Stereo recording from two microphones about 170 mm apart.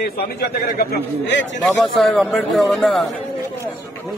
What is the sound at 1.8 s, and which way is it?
Speech, centre (ahead or behind).